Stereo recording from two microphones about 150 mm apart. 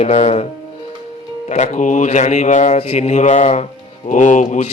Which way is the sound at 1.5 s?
55° left (ahead or behind).